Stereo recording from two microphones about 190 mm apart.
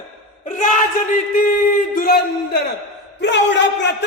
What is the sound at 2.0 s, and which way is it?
Speech, 55° left (ahead or behind).